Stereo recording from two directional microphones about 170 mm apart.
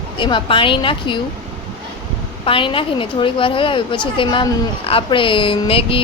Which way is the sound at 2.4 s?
30° left (ahead or behind).